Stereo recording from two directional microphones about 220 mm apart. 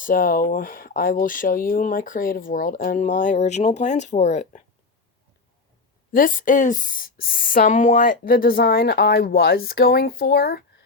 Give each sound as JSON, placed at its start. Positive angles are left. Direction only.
{"t": 0.0, "sound": "speech", "side_deg": 40}
{"t": 6.1, "sound": "speech", "side_deg": 40}